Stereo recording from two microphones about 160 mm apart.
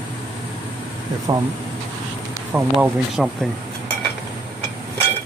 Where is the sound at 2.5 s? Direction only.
10° right (ahead or behind).